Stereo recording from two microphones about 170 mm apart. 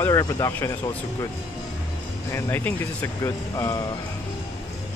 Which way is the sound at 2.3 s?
10° left (ahead or behind).